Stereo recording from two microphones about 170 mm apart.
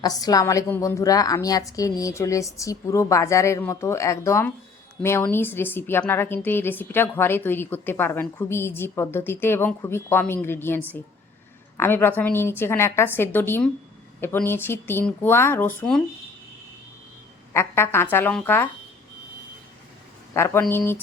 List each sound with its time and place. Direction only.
0.0 s a woman's voice: 20° left (ahead or behind)
17.5 s a woman's voice: 15° left (ahead or behind)
20.3 s a woman's voice: 15° left (ahead or behind)